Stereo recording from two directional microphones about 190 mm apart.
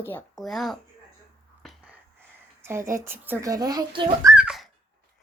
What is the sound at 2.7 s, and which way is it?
Speech, 15° right (ahead or behind).